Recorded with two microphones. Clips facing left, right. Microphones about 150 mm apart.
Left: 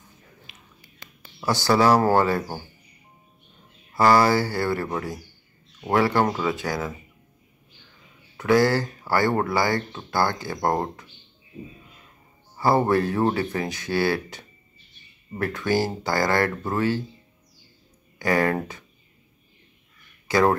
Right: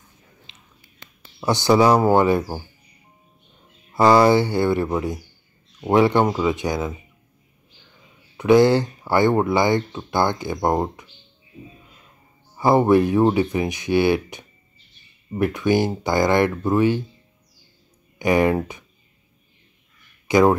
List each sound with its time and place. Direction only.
0.5 s a sound: 25° right (ahead or behind)
1.4 s speech: 20° right (ahead or behind)
3.9 s speech: 20° right (ahead or behind)
8.4 s speech: 20° right (ahead or behind)
12.5 s speech: 15° right (ahead or behind)
18.2 s speech: 15° right (ahead or behind)
20.2 s speech: 15° right (ahead or behind)